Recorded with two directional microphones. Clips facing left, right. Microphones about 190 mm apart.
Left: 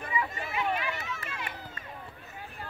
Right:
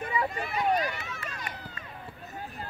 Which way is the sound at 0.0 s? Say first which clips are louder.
Right 3 dB; 40° right (ahead or behind).